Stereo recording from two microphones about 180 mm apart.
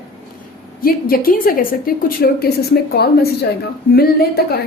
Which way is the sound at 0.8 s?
55° left (ahead or behind).